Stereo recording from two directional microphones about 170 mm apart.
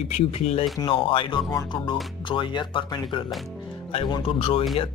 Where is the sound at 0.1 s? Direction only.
35° left (ahead or behind).